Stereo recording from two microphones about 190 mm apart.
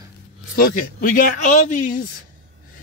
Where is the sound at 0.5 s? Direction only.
45° left (ahead or behind).